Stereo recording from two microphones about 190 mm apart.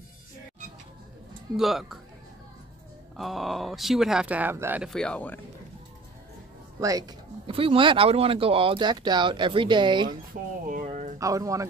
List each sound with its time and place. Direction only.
1.6 s speech: centre (ahead or behind)
3.2 s speech: centre (ahead or behind)
4.9 s speech: 5° left (ahead or behind)
6.8 s speech: 20° right (ahead or behind)
10.3 s speech: 50° right (ahead or behind)
10.7 s a sound: 40° right (ahead or behind)
11.1 s speech: 15° right (ahead or behind)